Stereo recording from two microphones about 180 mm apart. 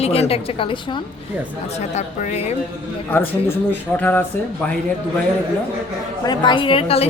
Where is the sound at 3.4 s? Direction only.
10° left (ahead or behind).